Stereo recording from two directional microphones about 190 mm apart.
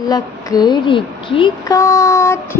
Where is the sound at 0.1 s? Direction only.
20° left (ahead or behind).